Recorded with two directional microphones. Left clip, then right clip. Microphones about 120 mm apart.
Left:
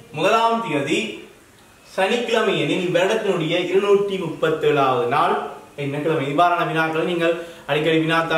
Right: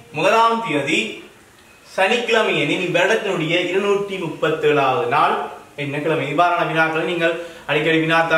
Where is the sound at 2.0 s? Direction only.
10° left (ahead or behind).